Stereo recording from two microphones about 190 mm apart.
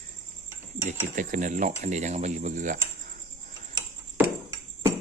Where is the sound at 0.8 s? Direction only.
45° right (ahead or behind).